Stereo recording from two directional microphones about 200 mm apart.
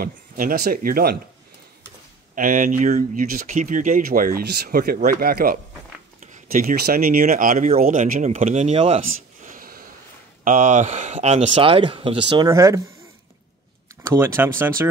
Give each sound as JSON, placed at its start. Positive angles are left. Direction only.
{"t": 0.0, "sound": "speech", "side_deg": -45}
{"t": 2.3, "sound": "speech", "side_deg": -45}
{"t": 9.4, "sound": "a sound", "side_deg": -45}
{"t": 10.4, "sound": "speech", "side_deg": -40}
{"t": 14.2, "sound": "speech", "side_deg": -10}